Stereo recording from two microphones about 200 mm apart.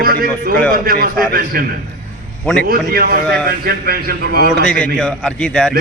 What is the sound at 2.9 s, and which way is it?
A man's voice, 50° right (ahead or behind).